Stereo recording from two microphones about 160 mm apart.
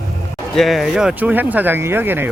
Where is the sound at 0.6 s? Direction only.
Centre (ahead or behind).